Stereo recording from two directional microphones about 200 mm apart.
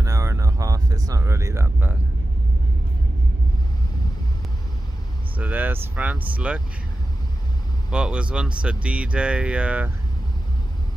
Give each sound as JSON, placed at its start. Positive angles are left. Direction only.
{"t": 0.0, "sound": "a sound", "side_deg": -15}
{"t": 5.4, "sound": "speech", "side_deg": -10}
{"t": 7.9, "sound": "speech", "side_deg": -5}